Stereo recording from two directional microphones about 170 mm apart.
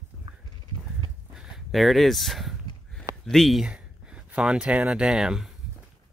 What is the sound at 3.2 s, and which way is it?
Speech, centre (ahead or behind).